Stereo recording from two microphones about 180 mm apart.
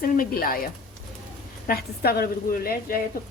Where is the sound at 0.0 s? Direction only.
55° left (ahead or behind).